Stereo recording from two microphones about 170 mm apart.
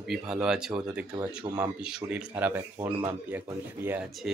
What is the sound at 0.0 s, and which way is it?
A man's voice, 5° right (ahead or behind).